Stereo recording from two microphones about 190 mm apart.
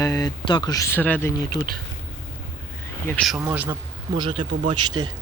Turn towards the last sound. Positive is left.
turn(degrees=-20)  # may be behind; listen again after turning